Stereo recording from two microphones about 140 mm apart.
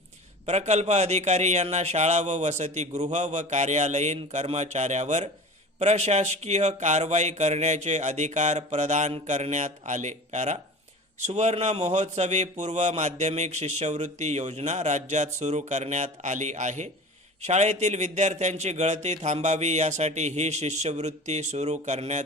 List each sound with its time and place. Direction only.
0.4 s a man's voice: 55° right (ahead or behind)